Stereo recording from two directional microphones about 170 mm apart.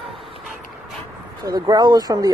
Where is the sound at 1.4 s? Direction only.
25° right (ahead or behind).